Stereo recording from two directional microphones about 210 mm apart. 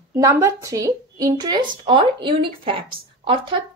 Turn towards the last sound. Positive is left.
turn(degrees=-25)  # may be behind; listen again after turning